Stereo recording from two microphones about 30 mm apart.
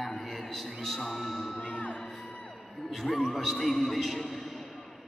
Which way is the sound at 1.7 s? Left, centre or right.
Left.